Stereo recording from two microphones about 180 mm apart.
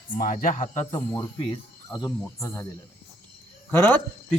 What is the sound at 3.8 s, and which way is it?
Speech, 10° left (ahead or behind).